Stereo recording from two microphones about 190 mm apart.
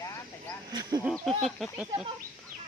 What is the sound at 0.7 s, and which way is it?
Speech, 20° right (ahead or behind).